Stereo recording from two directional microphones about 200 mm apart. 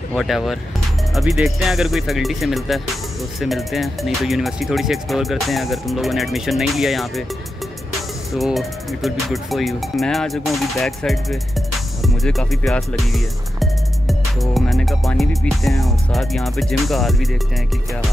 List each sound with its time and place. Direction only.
0.1 s speech: centre (ahead or behind)
8.4 s speech: centre (ahead or behind)